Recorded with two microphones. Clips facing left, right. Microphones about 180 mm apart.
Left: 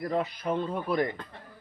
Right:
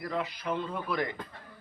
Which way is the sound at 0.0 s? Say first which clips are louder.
Left 4 dB; 45° left (ahead or behind).